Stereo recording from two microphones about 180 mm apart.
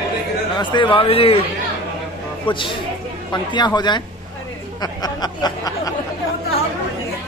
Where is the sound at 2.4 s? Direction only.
25° left (ahead or behind).